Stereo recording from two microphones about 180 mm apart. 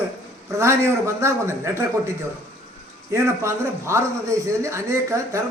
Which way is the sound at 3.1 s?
15° right (ahead or behind).